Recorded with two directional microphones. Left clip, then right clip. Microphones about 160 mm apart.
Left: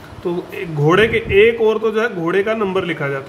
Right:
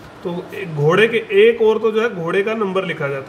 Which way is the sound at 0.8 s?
30° left (ahead or behind).